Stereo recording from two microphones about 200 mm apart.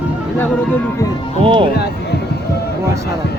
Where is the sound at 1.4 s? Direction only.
25° right (ahead or behind).